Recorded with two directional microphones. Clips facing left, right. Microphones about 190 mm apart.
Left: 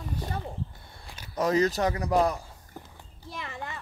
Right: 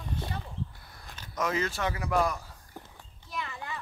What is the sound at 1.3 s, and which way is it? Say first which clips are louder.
Speech: left 6 dB; 35° left (ahead or behind).